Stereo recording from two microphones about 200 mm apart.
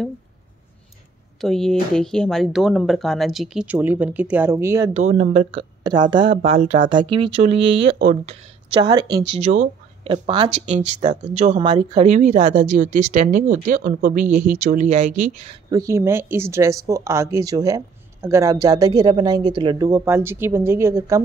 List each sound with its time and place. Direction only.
1.4 s speech: centre (ahead or behind); by 4.9 s 15° right (ahead or behind)
4.9 s speech: 35° right (ahead or behind)
9.4 s speech: 35° right (ahead or behind)
10.1 s speech: 25° right (ahead or behind)
10.6 s speech: 35° right (ahead or behind)
15.7 s speech: 15° right (ahead or behind)